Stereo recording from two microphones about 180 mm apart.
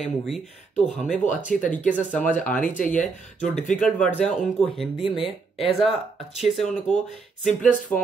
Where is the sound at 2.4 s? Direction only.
5° left (ahead or behind).